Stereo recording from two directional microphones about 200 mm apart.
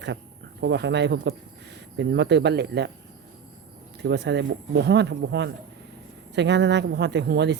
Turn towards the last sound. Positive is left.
turn(degrees=-60)  # may be behind; listen again after turning